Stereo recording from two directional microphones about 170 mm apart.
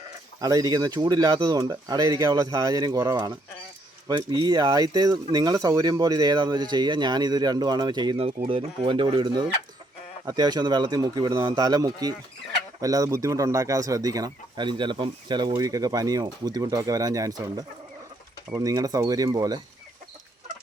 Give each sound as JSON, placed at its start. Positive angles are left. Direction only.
{"t": 0.3, "sound": "speech", "side_deg": -20}